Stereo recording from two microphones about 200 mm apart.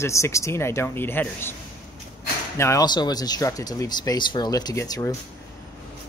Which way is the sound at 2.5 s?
15° left (ahead or behind).